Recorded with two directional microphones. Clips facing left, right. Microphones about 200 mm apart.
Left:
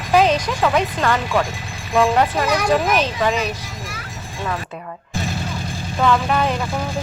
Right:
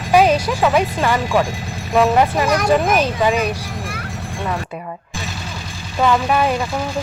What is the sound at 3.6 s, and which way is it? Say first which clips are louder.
Vehicle: right 5 dB; 60° right (ahead or behind).